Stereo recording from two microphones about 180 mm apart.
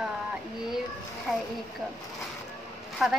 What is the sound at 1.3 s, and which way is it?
Speech, centre (ahead or behind).